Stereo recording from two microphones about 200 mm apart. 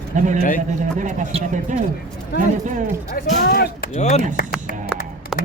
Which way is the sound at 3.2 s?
50° left (ahead or behind).